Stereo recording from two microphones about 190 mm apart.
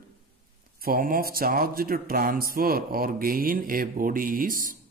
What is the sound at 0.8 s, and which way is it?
Speech, 50° right (ahead or behind).